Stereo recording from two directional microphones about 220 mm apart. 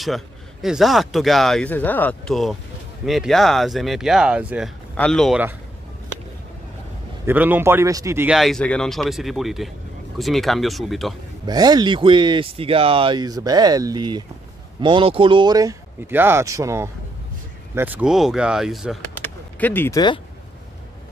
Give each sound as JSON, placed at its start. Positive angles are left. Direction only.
{"t": 0.0, "sound": "speech", "side_deg": 0}
{"t": 7.2, "sound": "speech", "side_deg": -10}
{"t": 11.4, "sound": "speech", "side_deg": -20}
{"t": 19.1, "sound": "a sound", "side_deg": 10}